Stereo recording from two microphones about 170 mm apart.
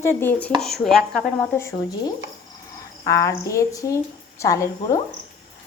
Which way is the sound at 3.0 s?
20° left (ahead or behind).